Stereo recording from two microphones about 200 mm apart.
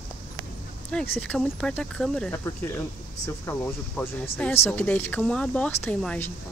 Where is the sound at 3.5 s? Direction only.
10° left (ahead or behind).